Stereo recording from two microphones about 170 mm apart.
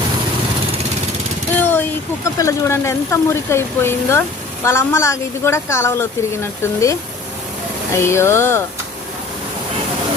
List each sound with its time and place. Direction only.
1.5 s a sound: 10° left (ahead or behind)
2.4 s a woman's voice: 15° left (ahead or behind)
8.0 s a woman's voice: 15° left (ahead or behind)